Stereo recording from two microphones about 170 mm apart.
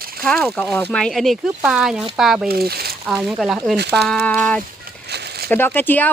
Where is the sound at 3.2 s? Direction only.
Centre (ahead or behind).